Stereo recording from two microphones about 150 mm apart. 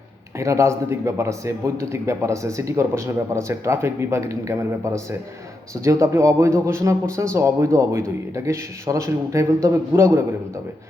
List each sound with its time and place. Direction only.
0.3 s speech: 20° right (ahead or behind)